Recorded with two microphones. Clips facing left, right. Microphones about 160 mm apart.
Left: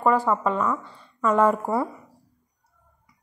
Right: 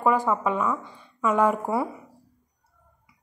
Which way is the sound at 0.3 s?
10° right (ahead or behind).